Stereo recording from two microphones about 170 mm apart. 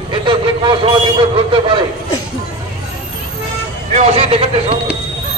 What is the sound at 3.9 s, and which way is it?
Speech, 40° right (ahead or behind).